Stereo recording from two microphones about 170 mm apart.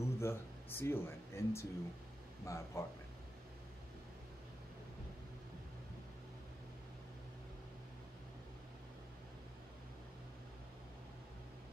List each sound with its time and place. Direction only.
0.0 s speech: 15° left (ahead or behind)